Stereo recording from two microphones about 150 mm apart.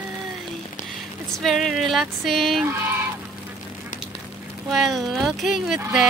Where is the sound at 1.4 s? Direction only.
Centre (ahead or behind).